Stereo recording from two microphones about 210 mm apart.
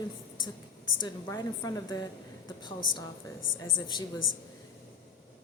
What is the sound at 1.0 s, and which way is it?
A woman's voice, 20° left (ahead or behind).